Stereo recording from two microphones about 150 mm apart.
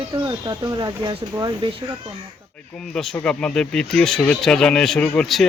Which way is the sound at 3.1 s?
10° left (ahead or behind).